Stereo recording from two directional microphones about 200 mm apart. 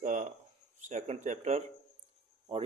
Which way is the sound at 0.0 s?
40° right (ahead or behind).